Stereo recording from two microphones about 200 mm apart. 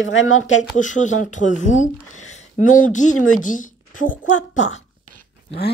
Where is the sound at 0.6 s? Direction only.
40° left (ahead or behind).